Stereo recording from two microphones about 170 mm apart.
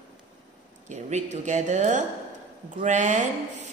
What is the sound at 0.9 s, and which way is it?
Speech, 45° right (ahead or behind).